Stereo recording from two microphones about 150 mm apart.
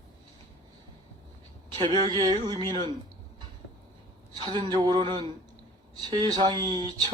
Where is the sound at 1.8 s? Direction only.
30° right (ahead or behind).